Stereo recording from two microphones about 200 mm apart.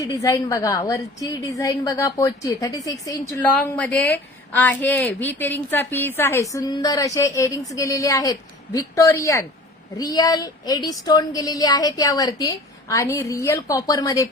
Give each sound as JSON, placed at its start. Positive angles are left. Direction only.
{"t": 0.0, "sound": "a woman's voice", "side_deg": 15}